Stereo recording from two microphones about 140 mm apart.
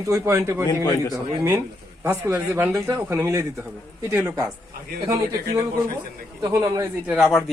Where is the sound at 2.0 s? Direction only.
15° right (ahead or behind).